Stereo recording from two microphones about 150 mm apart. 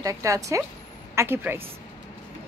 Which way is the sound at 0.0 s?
20° right (ahead or behind).